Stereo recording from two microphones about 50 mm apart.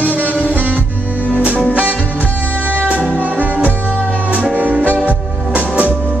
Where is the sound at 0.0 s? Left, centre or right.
Right.